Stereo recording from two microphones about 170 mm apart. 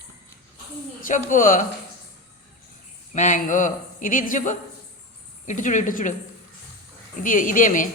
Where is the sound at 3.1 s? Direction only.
50° left (ahead or behind).